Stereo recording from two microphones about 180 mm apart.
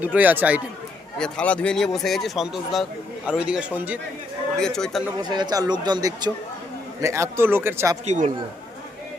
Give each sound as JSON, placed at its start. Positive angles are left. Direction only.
{"t": 0.0, "sound": "speech", "side_deg": -10}
{"t": 1.2, "sound": "speech", "side_deg": 5}
{"t": 4.5, "sound": "speech", "side_deg": 5}
{"t": 5.2, "sound": "speech", "side_deg": -25}
{"t": 8.0, "sound": "speech", "side_deg": -40}